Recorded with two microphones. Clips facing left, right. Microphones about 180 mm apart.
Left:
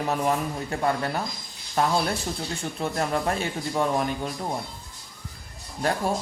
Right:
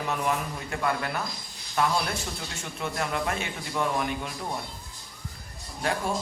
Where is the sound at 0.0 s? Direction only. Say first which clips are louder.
Left 4 dB; 35° left (ahead or behind).